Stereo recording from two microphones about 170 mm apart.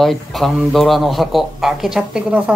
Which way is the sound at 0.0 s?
Centre (ahead or behind).